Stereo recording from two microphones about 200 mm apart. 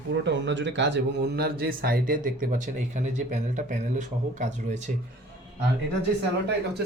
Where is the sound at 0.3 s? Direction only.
65° right (ahead or behind); by 4.8 s 35° right (ahead or behind).